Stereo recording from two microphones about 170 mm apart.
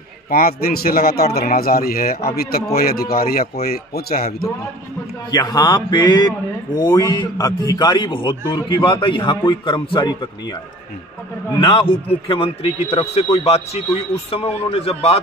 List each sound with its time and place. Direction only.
0.3 s a man's voice: 60° left (ahead or behind)
5.3 s a man's voice: 25° left (ahead or behind)
12.1 s a man's voice: 30° left (ahead or behind)